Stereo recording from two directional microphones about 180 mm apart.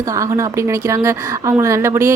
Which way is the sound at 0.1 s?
15° right (ahead or behind).